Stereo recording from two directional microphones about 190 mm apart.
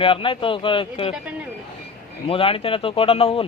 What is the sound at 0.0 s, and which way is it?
Speech, 30° left (ahead or behind).